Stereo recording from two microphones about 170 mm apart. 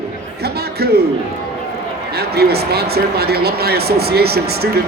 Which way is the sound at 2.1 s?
70° right (ahead or behind).